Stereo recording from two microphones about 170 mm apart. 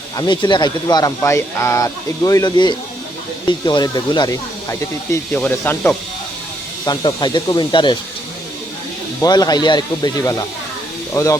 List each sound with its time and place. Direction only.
0.2 s speech: 25° left (ahead or behind); by 6.0 s 10° left (ahead or behind)
6.8 s speech: 25° left (ahead or behind)
9.2 s speech: 20° left (ahead or behind)